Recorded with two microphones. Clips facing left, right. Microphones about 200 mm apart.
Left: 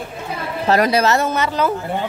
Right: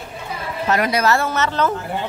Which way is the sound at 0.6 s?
35° left (ahead or behind).